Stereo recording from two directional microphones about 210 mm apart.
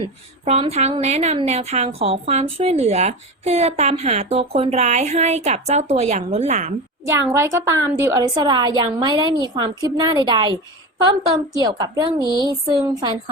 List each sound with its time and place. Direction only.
0.4 s a woman's voice: 30° right (ahead or behind)
7.1 s a woman's voice: 10° right (ahead or behind)
11.5 s a woman's voice: 20° right (ahead or behind)